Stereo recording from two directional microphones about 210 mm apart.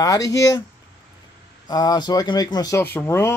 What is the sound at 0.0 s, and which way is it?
Speech, 15° left (ahead or behind).